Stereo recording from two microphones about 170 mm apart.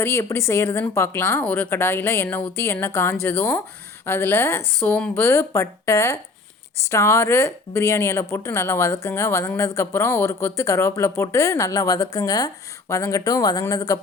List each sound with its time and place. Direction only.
0.0 s a woman's voice: 15° left (ahead or behind)